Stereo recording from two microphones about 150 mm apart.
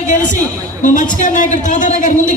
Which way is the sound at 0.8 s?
55° left (ahead or behind).